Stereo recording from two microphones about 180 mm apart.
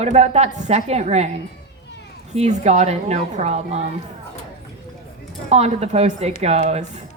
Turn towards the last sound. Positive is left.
turn(degrees=-40)  # may be behind; listen again after turning